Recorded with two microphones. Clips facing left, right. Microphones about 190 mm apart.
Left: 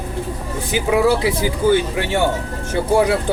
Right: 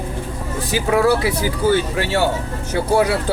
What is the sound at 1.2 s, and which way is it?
Speech, 15° left (ahead or behind).